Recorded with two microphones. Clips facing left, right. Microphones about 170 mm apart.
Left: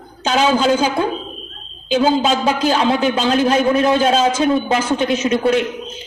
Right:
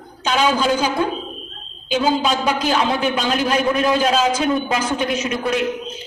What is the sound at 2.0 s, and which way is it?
A man's voice, 30° left (ahead or behind).